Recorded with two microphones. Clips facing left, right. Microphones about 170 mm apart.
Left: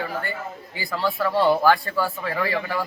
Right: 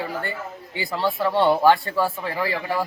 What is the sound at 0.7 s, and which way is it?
Speech, 25° right (ahead or behind).